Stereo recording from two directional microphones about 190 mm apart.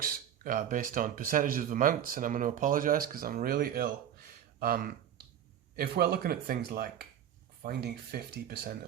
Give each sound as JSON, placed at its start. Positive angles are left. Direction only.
{"t": 0.0, "sound": "speech", "side_deg": -45}